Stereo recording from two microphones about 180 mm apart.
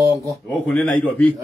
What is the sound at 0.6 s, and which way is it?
Speech, 5° left (ahead or behind).